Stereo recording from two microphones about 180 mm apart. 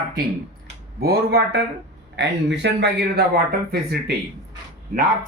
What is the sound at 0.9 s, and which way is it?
Speech, 60° right (ahead or behind).